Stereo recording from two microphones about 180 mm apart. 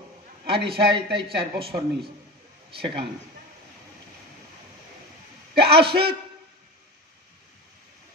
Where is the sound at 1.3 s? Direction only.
30° right (ahead or behind).